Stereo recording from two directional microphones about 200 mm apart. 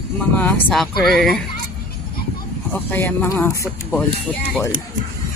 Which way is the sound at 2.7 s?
10° left (ahead or behind).